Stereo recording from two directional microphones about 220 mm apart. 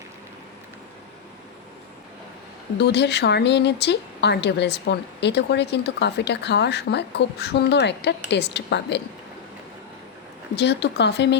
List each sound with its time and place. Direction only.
2.7 s speech: 50° left (ahead or behind)
10.5 s speech: 50° left (ahead or behind)